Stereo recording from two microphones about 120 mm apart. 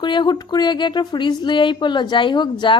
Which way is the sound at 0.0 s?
40° left (ahead or behind).